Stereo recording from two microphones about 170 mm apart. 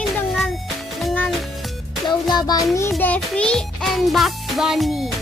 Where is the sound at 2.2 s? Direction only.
25° left (ahead or behind).